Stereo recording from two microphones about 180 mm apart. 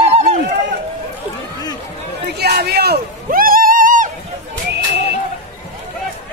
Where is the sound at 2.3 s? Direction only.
65° right (ahead or behind).